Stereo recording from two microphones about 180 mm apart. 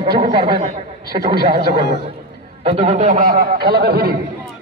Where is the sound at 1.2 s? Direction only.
25° right (ahead or behind).